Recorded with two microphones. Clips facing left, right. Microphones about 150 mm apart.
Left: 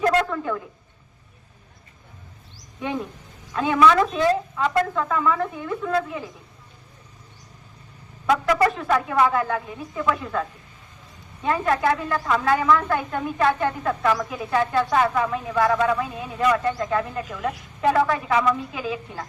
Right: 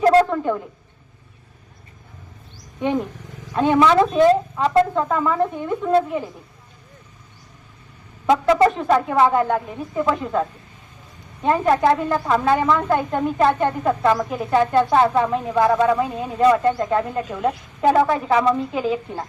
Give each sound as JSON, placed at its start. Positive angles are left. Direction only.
{"t": 0.0, "sound": "a sound", "side_deg": -30}
{"t": 3.5, "sound": "speech", "side_deg": -30}
{"t": 8.3, "sound": "speech", "side_deg": -25}
{"t": 11.4, "sound": "speech", "side_deg": -30}